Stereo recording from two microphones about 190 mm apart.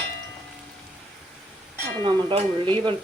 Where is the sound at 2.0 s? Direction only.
25° right (ahead or behind).